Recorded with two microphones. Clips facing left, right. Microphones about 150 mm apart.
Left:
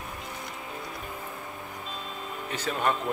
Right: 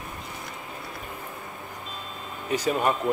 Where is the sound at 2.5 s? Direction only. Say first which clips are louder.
Right 5 dB; 10° right (ahead or behind).